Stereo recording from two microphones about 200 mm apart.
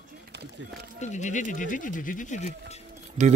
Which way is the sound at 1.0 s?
35° left (ahead or behind).